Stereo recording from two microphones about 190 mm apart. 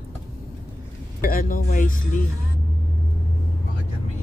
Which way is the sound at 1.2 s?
50° left (ahead or behind).